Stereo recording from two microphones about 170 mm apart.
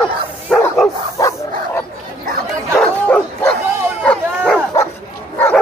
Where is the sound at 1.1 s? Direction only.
20° left (ahead or behind).